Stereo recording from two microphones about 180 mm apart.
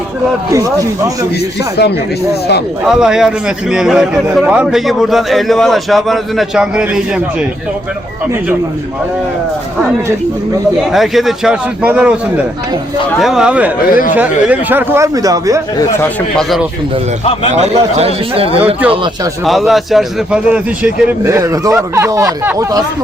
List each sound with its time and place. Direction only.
0.5 s speech: 20° right (ahead or behind)
1.8 s speech: 65° left (ahead or behind)
2.8 s a man's voice: centre (ahead or behind)
10.9 s a man's voice: centre (ahead or behind)
13.9 s speech: 50° left (ahead or behind)
14.2 s speech: 10° right (ahead or behind)
16.0 s a man's voice: centre (ahead or behind)
17.5 s speech: 35° right (ahead or behind)
19.5 s a man's voice: centre (ahead or behind)
21.2 s speech: 15° right (ahead or behind)